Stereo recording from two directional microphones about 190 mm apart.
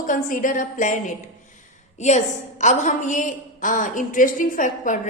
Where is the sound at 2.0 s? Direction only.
40° left (ahead or behind).